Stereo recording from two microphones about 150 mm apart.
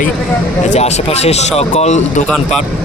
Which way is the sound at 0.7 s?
45° left (ahead or behind).